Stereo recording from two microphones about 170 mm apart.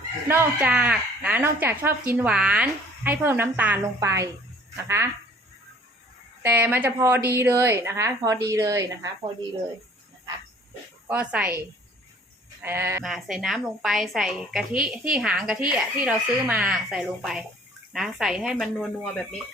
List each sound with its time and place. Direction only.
0.3 s speech: 10° right (ahead or behind)
6.4 s speech: 10° right (ahead or behind)
11.1 s speech: 5° right (ahead or behind)
12.6 s speech: 15° right (ahead or behind)
13.1 s a woman's voice: centre (ahead or behind)